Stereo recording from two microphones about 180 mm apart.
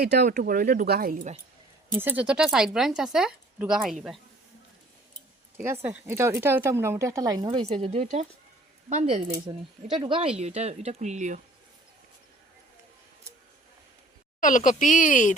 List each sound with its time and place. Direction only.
0.0 s speech: 60° right (ahead or behind)
0.3 s speech: 50° right (ahead or behind)
2.0 s speech: 10° right (ahead or behind)
5.8 s speech: 10° right (ahead or behind)
7.6 s speech: 35° right (ahead or behind)
9.5 s speech: 25° right (ahead or behind); by 11.3 s 40° right (ahead or behind)
14.4 s speech: 45° left (ahead or behind)